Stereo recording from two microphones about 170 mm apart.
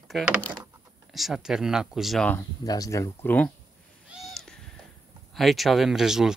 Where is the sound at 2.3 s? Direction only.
20° left (ahead or behind).